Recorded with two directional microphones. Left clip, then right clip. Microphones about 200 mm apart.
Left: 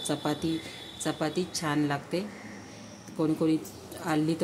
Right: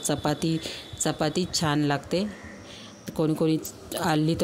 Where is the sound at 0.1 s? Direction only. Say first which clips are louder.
Right 4 dB; 40° right (ahead or behind).